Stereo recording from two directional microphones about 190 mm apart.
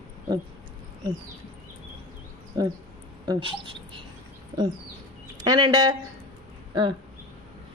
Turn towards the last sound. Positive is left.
turn(degrees=-25)  # may be behind; listen again after turning